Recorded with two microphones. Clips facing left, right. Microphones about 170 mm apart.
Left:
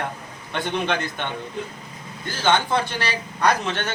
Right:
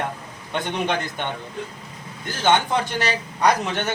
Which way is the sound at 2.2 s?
20° right (ahead or behind).